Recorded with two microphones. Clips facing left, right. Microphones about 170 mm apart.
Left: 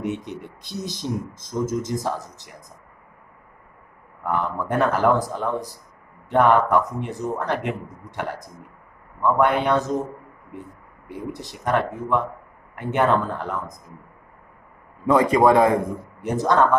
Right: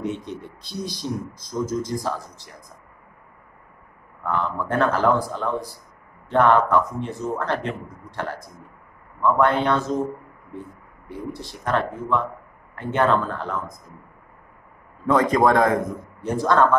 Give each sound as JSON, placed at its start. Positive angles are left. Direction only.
{"t": 0.0, "sound": "speech", "side_deg": 20}
{"t": 4.2, "sound": "a man's voice", "side_deg": 15}
{"t": 11.1, "sound": "a man's voice", "side_deg": 15}
{"t": 15.0, "sound": "a man's voice", "side_deg": 10}